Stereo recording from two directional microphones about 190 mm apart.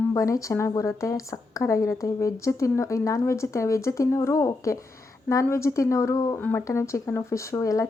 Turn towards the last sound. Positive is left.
turn(degrees=15)  # may be behind; listen again after turning